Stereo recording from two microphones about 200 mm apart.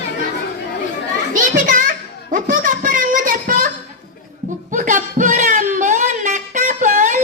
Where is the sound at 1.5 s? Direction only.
45° right (ahead or behind).